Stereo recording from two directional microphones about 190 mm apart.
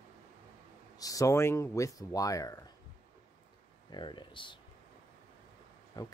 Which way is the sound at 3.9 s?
25° left (ahead or behind).